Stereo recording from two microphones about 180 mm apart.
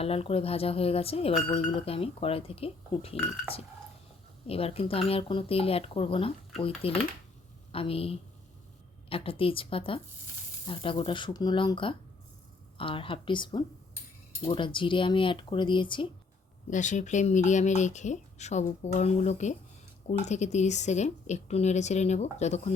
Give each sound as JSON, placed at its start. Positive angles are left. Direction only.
{"t": 0.0, "sound": "speech", "side_deg": 35}
{"t": 4.4, "sound": "speech", "side_deg": 30}
{"t": 16.6, "sound": "speech", "side_deg": 45}